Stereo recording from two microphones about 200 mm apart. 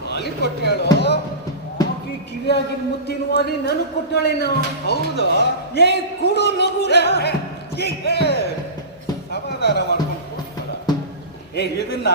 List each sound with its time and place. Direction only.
0.1 s speech: 55° left (ahead or behind)
3.1 s speech: 55° left (ahead or behind)
9.3 s a sound: 55° left (ahead or behind)
11.5 s speech: 55° left (ahead or behind)